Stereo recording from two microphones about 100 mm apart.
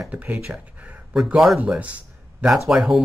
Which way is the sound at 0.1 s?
15° right (ahead or behind).